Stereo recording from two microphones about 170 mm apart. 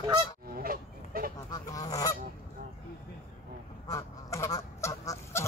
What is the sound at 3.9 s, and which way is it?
Goose, 20° left (ahead or behind).